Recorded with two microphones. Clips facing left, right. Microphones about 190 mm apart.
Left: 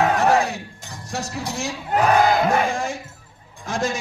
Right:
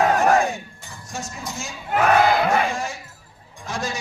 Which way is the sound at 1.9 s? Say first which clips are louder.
Even; 45° left (ahead or behind).